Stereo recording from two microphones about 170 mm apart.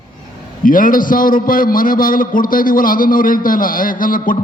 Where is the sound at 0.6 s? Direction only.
50° left (ahead or behind).